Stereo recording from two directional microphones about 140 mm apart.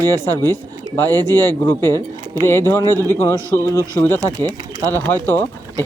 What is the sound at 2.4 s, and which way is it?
Speech, 15° left (ahead or behind).